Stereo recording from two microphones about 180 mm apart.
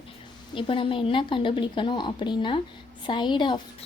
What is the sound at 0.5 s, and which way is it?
A woman's voice, 30° left (ahead or behind).